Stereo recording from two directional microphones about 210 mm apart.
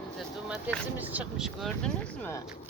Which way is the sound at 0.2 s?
5° right (ahead or behind).